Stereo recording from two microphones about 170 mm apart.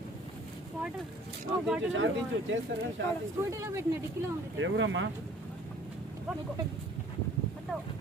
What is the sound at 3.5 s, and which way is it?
Speech, 15° right (ahead or behind).